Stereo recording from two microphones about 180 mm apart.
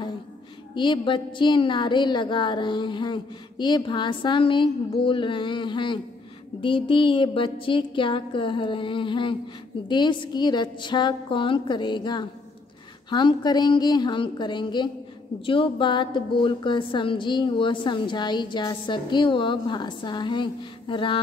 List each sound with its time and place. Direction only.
0.7 s a woman's voice: 25° left (ahead or behind)